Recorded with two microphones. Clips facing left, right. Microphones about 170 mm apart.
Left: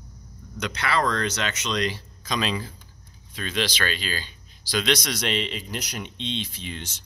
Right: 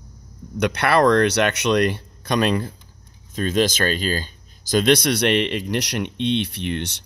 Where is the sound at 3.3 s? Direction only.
45° right (ahead or behind); by 7.0 s 65° right (ahead or behind).